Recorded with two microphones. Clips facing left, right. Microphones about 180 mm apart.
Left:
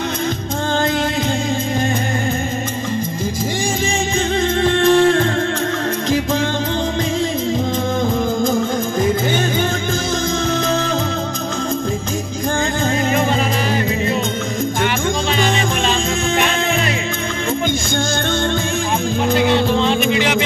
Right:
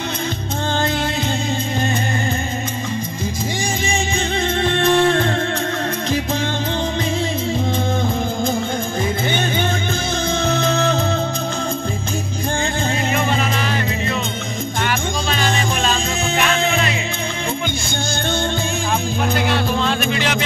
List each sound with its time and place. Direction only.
4.6 s music: 40° left (ahead or behind)
19.4 s music: 20° left (ahead or behind)